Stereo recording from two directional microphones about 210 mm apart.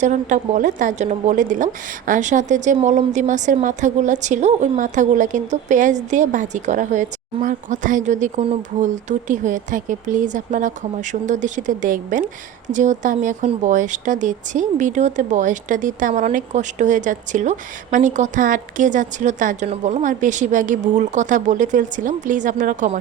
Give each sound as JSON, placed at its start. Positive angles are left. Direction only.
{"t": 0.0, "sound": "speech", "side_deg": -35}